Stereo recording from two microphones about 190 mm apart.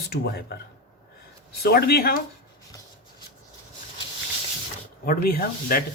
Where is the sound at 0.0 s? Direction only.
60° left (ahead or behind).